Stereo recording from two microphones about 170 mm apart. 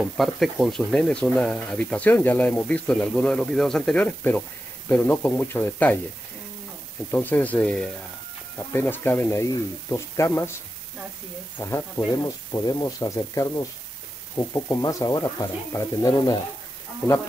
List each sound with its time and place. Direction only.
0.0 s speech: centre (ahead or behind)
7.1 s speech: 10° left (ahead or behind)
11.5 s speech: 15° left (ahead or behind)